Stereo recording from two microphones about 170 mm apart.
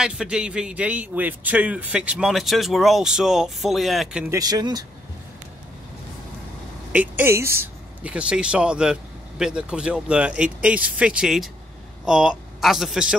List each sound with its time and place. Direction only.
0.0 s a man's voice: 5° right (ahead or behind)
4.3 s speech: 20° right (ahead or behind)
6.9 s a man's voice: 10° right (ahead or behind)